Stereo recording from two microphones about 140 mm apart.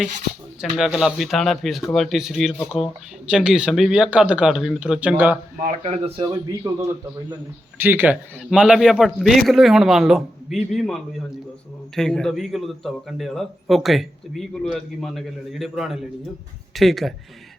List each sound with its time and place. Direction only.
0.6 s a man's voice: 5° right (ahead or behind)
5.8 s speech: 45° right (ahead or behind)
6.7 s a man's voice: 20° right (ahead or behind)
8.4 s a man's voice: 5° right (ahead or behind)